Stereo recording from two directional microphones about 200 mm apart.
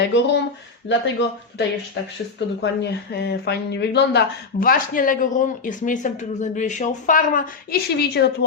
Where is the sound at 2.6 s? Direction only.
55° left (ahead or behind).